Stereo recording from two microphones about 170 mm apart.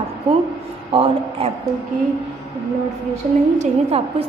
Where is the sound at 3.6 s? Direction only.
35° right (ahead or behind).